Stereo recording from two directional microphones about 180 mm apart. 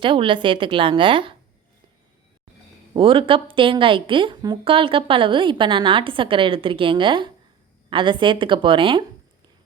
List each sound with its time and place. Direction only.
0.0 s a woman's voice: 25° right (ahead or behind)
2.9 s a woman's voice: 30° right (ahead or behind)